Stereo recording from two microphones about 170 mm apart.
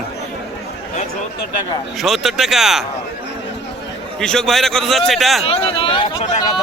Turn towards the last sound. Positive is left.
turn(degrees=30)  # may be behind; listen again after turning